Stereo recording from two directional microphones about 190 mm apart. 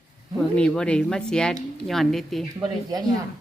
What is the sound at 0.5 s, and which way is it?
Speech, 5° left (ahead or behind).